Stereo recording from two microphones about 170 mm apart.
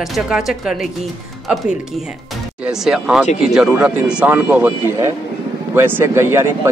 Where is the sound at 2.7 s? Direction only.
5° right (ahead or behind).